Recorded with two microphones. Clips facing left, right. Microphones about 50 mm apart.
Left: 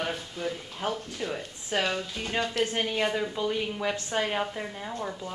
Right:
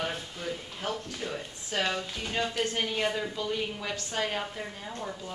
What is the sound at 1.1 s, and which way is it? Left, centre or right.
Speech, centre.